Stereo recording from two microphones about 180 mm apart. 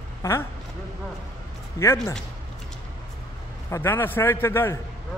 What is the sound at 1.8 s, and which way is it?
Speech, 15° left (ahead or behind).